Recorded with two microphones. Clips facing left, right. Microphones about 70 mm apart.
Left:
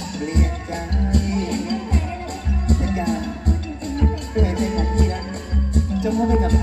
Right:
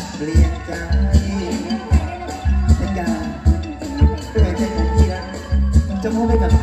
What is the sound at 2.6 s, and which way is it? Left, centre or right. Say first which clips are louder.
Music: even; right.